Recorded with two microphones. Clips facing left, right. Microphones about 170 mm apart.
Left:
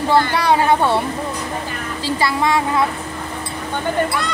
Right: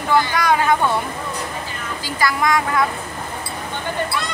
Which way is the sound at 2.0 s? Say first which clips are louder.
Left 2 dB; 30° left (ahead or behind).